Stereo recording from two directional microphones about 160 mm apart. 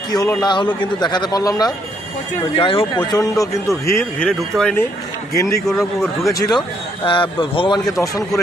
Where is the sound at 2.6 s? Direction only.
35° left (ahead or behind); by 4.0 s 15° left (ahead or behind).